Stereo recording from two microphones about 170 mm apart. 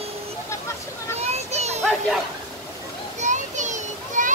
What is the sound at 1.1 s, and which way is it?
Children playing, 40° right (ahead or behind).